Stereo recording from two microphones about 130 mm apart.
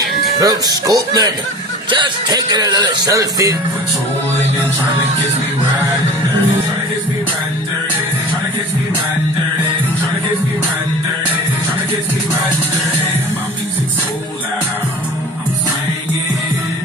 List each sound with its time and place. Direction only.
0.4 s speech: 30° right (ahead or behind)